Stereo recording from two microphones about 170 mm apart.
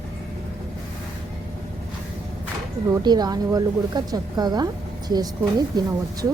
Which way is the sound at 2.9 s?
25° right (ahead or behind).